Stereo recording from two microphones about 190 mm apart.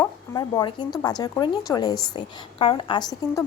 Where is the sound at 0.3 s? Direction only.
20° left (ahead or behind).